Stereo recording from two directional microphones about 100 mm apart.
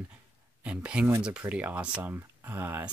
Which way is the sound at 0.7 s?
10° right (ahead or behind).